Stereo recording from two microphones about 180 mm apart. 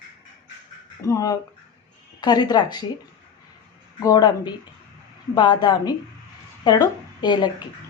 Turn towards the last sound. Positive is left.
turn(degrees=25)  # may be behind; listen again after turning